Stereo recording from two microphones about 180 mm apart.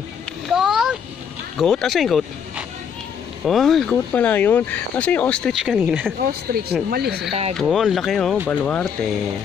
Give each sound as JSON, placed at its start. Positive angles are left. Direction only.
{"t": 0.5, "sound": "a sound", "side_deg": 0}
{"t": 1.6, "sound": "speech", "side_deg": 0}
{"t": 6.1, "sound": "speech", "side_deg": -60}
{"t": 7.5, "sound": "speech", "side_deg": 0}